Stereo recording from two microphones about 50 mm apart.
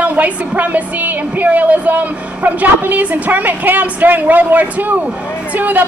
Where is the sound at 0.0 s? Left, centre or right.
Right.